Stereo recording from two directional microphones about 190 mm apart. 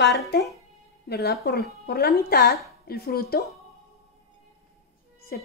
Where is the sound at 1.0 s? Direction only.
60° left (ahead or behind).